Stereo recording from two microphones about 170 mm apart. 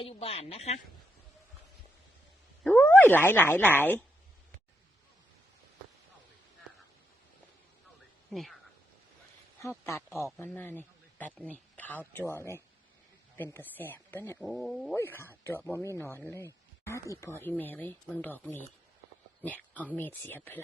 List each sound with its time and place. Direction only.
0.0 s speech: 35° left (ahead or behind)
2.6 s speech: 10° left (ahead or behind)
8.3 s speech: centre (ahead or behind)
9.6 s a man's voice: 15° left (ahead or behind)
14.3 s speech: centre (ahead or behind)
14.9 s speech: 15° left (ahead or behind)
19.7 s speech: 10° left (ahead or behind)